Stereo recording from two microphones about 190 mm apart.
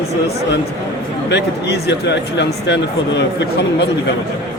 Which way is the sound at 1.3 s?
60° left (ahead or behind).